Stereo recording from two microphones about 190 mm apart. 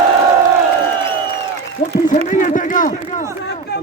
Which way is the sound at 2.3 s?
45° left (ahead or behind).